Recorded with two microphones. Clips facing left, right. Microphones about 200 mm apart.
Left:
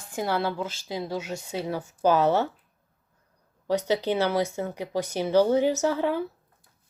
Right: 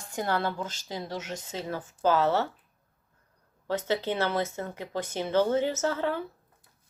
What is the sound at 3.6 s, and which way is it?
A woman's voice, 15° left (ahead or behind).